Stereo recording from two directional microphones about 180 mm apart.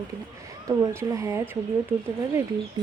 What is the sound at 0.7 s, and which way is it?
Speech, 15° right (ahead or behind).